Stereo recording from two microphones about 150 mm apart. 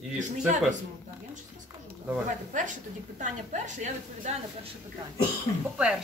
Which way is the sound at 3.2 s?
55° right (ahead or behind).